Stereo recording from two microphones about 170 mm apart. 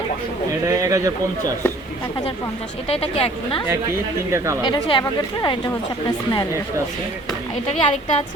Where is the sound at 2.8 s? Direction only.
35° left (ahead or behind).